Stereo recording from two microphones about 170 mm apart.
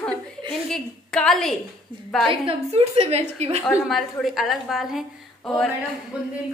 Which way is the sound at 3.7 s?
Centre (ahead or behind).